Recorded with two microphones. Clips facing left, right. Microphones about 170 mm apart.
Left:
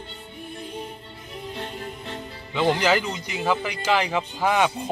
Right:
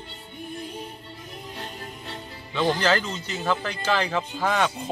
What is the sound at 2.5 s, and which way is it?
Speech, 15° left (ahead or behind).